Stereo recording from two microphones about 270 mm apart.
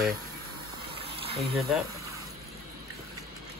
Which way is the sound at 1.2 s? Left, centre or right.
Right.